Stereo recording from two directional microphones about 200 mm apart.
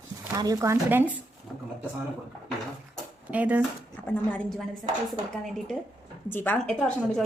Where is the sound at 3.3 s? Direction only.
5° right (ahead or behind).